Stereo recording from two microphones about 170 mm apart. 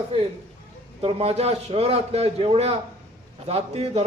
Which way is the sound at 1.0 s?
35° right (ahead or behind).